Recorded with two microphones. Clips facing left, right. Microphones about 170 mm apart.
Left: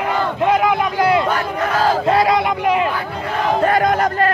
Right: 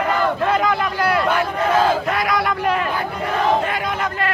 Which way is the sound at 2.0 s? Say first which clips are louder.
Left 5 dB; 30° left (ahead or behind).